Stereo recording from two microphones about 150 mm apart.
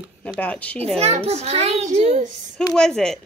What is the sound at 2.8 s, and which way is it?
Speech, 5° left (ahead or behind).